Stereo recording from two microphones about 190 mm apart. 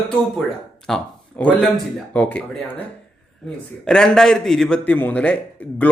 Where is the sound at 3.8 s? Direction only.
5° left (ahead or behind).